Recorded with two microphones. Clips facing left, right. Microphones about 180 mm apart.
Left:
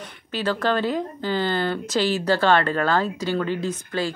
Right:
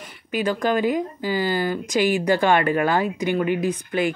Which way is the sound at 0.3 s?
15° right (ahead or behind).